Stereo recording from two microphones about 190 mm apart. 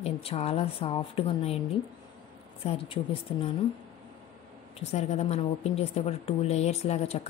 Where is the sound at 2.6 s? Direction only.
30° left (ahead or behind).